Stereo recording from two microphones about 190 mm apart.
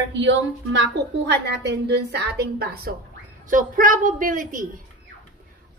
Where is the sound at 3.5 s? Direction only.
45° right (ahead or behind).